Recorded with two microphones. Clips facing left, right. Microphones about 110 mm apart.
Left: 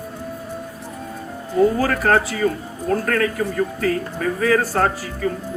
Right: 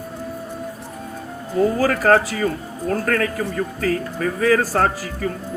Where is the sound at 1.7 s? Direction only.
40° right (ahead or behind).